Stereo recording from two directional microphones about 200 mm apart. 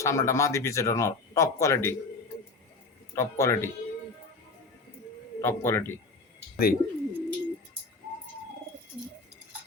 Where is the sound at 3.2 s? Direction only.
15° left (ahead or behind).